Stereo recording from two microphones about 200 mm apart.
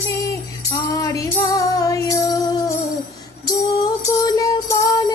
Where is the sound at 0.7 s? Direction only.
15° left (ahead or behind).